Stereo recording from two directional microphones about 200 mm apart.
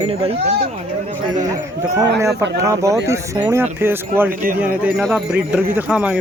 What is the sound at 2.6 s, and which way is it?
Speech, 15° right (ahead or behind).